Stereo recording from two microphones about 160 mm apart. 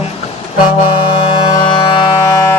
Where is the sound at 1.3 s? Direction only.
30° left (ahead or behind).